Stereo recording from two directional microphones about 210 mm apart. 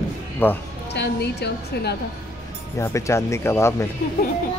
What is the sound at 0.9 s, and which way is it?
A woman's voice, 55° left (ahead or behind).